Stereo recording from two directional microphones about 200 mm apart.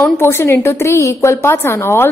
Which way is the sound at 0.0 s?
10° left (ahead or behind).